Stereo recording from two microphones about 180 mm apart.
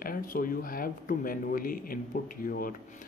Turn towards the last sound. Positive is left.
turn(degrees=50)  # may be behind; listen again after turning